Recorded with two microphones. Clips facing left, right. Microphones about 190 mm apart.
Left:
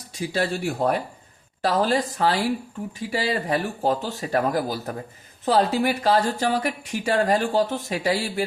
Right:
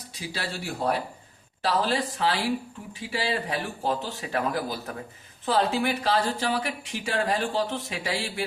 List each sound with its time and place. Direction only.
0.1 s speech: 50° left (ahead or behind)